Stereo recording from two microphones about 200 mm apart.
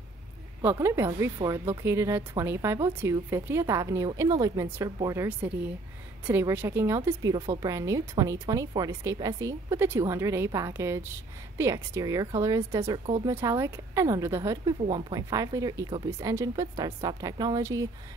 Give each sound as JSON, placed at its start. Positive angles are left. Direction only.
{"t": 0.6, "sound": "a woman's voice", "side_deg": -10}
{"t": 7.3, "sound": "a woman's voice", "side_deg": -25}
{"t": 7.7, "sound": "a woman's voice", "side_deg": -15}